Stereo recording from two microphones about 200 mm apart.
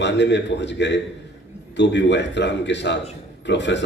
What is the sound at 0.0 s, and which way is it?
A man's voice, 60° left (ahead or behind).